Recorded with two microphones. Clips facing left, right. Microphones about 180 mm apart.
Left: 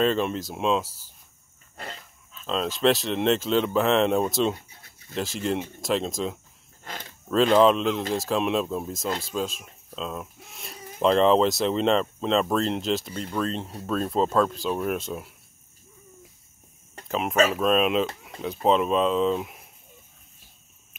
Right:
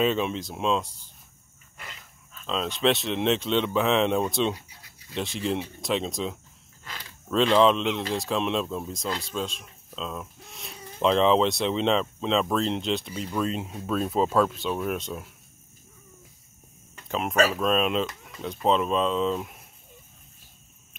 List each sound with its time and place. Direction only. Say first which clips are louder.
0.0 s speech: left 1 dB; centre (ahead or behind)
2.3 s speech: left 2 dB; centre (ahead or behind)
6.8 s a sound: left 4 dB; 45° left (ahead or behind)
7.5 s speech: left 2 dB; centre (ahead or behind)
17.1 s speech: left 1 dB; centre (ahead or behind)